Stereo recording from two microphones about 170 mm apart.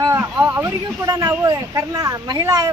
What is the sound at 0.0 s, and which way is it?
Speech, 15° right (ahead or behind).